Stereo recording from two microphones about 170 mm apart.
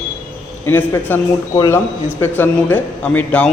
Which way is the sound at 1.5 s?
20° left (ahead or behind).